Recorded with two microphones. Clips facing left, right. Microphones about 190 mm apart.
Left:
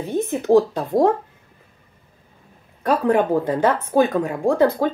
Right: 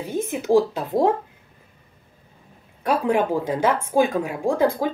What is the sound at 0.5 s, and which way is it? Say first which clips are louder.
Speech: left 3 dB; 20° left (ahead or behind).